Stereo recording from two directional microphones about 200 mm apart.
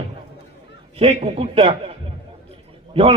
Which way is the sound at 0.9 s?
30° right (ahead or behind).